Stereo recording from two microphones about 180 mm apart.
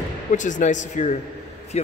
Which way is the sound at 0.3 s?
45° left (ahead or behind).